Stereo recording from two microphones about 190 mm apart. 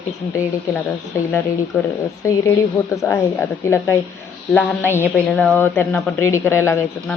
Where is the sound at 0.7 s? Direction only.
15° left (ahead or behind).